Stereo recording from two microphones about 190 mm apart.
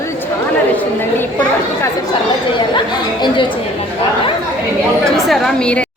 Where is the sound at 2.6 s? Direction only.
25° left (ahead or behind).